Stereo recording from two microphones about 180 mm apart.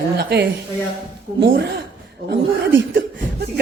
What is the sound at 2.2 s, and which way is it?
Speech, 90° right.